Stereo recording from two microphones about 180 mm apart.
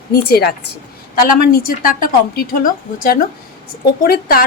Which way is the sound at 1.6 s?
50° left (ahead or behind).